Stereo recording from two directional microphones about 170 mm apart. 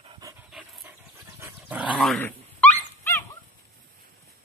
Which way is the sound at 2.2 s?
10° left (ahead or behind).